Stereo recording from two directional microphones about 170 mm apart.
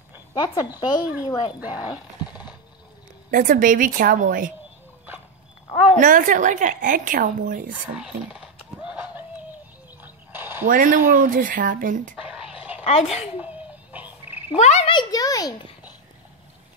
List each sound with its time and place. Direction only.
0.3 s a woman's voice: 25° left (ahead or behind)
3.3 s speech: 55° right (ahead or behind)
5.9 s speech: 50° right (ahead or behind)
7.9 s a sound: 5° right (ahead or behind)
10.7 s speech: 50° right (ahead or behind)
12.3 s a sound: 10° right (ahead or behind)
13.0 s frog: 5° right (ahead or behind)
14.5 s speech: 40° left (ahead or behind)
14.9 s a woman's voice: 25° left (ahead or behind)